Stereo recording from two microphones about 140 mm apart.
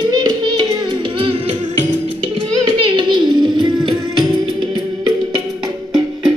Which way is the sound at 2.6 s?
35° right (ahead or behind).